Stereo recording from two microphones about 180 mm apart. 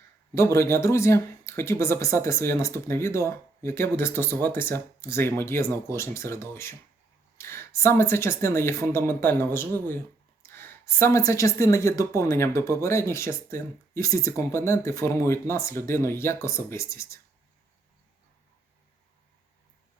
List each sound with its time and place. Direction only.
0.3 s speech: 15° left (ahead or behind)